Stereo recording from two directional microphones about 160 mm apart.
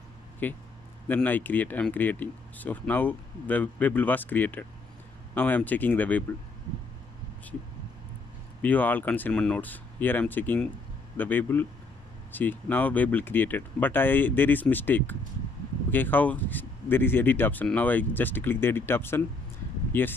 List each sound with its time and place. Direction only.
0.4 s speech: 10° left (ahead or behind)
8.6 s speech: 10° left (ahead or behind)